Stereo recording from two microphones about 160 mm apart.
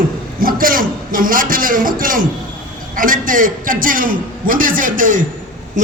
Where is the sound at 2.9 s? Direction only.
60° right (ahead or behind).